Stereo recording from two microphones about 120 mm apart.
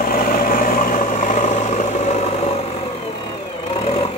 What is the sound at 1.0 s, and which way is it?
Vehicle, 90° left.